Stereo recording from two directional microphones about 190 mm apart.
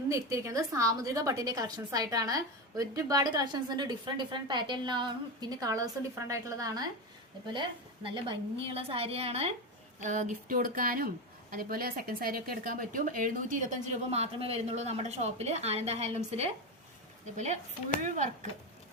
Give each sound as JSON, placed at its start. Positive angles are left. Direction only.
{"t": 0.1, "sound": "a woman's voice", "side_deg": -15}
{"t": 8.0, "sound": "speech", "side_deg": -25}